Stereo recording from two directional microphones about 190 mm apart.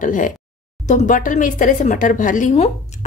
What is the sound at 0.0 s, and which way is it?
Speech, 45° left (ahead or behind).